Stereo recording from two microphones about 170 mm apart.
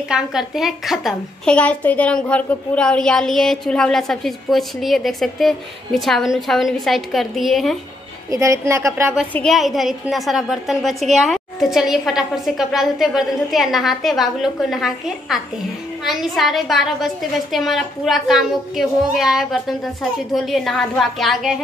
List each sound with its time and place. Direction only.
0.1 s a woman's voice: 5° right (ahead or behind)
8.3 s a woman's voice: 20° right (ahead or behind)
9.3 s a woman's voice: 5° left (ahead or behind)